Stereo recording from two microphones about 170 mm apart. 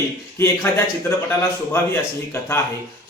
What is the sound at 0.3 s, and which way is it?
A man's voice, 15° left (ahead or behind).